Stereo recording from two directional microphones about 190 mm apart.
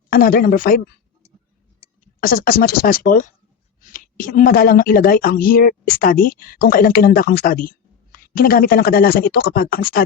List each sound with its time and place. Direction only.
0.1 s a woman's voice: 50° left (ahead or behind)
2.2 s a woman's voice: 50° left (ahead or behind)